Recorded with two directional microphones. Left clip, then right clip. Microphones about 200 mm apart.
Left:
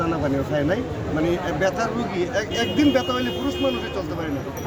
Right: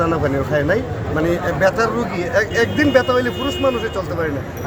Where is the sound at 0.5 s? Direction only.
15° right (ahead or behind).